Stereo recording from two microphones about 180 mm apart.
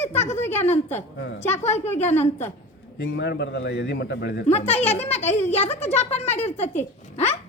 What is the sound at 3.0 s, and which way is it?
A man's voice, 75° left (ahead or behind).